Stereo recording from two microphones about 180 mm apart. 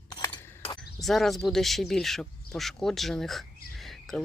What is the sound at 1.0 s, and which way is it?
Speech, centre (ahead or behind).